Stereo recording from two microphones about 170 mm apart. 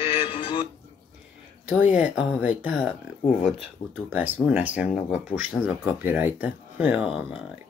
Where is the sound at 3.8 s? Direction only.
50° left (ahead or behind).